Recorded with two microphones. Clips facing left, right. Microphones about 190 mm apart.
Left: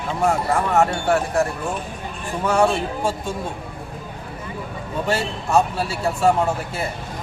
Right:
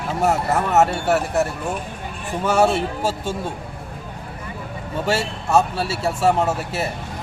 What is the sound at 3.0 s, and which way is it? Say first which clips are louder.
Speech: even; 25° right (ahead or behind).